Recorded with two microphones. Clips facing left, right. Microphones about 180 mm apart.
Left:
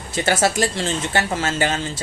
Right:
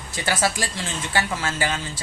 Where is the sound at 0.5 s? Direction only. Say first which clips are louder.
Left 8 dB; 25° left (ahead or behind).